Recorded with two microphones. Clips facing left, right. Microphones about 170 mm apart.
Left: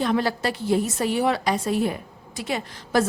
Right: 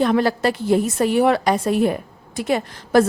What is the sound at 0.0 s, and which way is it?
A woman's voice, 55° right (ahead or behind).